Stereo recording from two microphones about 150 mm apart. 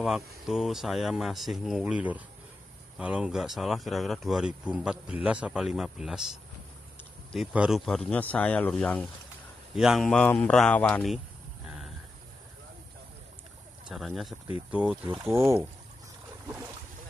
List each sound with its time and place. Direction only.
0.0 s speech: centre (ahead or behind)
7.3 s speech: 5° right (ahead or behind)
9.8 s speech: centre (ahead or behind)
13.8 s speech: centre (ahead or behind); by 15.7 s 15° right (ahead or behind)